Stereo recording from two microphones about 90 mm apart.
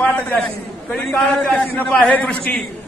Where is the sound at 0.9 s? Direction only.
5° left (ahead or behind).